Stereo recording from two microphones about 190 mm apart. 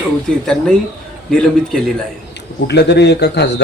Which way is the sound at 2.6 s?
60° left (ahead or behind).